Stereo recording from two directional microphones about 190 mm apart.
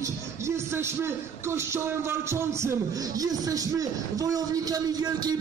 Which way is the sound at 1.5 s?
15° right (ahead or behind).